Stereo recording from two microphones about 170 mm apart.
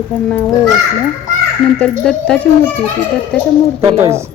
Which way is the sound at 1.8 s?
5° left (ahead or behind).